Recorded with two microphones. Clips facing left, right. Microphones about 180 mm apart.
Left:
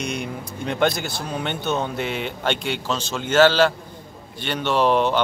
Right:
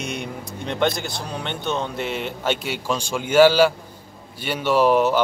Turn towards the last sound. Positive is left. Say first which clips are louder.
# right 2 dB
turn(degrees=-5)  # may be behind; listen again after turning